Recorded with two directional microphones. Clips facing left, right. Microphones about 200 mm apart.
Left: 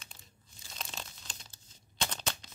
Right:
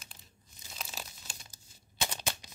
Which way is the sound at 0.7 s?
5° right (ahead or behind).